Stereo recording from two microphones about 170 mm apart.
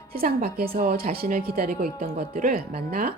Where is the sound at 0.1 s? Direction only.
60° right (ahead or behind).